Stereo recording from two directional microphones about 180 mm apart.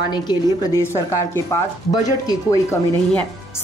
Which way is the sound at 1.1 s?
15° left (ahead or behind).